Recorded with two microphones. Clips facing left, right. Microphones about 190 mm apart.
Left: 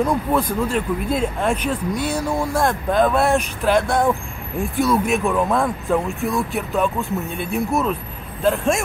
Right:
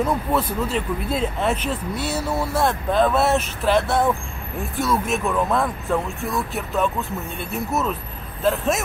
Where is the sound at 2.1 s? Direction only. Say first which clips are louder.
Right 1 dB; 5° right (ahead or behind).